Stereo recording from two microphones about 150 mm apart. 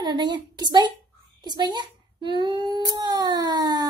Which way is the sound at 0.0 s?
30° right (ahead or behind).